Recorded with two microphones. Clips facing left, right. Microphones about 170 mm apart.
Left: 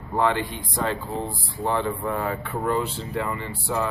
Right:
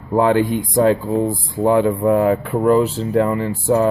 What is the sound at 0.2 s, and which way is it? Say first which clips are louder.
Speech: right 8 dB; 45° right (ahead or behind).